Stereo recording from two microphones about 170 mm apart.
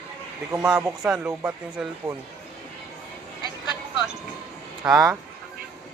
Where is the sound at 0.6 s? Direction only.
5° right (ahead or behind).